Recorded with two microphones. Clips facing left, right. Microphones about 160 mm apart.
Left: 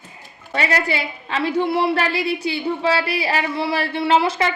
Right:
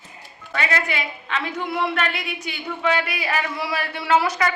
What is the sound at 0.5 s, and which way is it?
A woman's voice, 35° left (ahead or behind).